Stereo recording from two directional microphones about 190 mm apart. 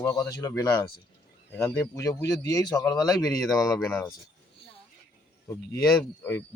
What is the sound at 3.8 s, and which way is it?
Speech, 5° left (ahead or behind).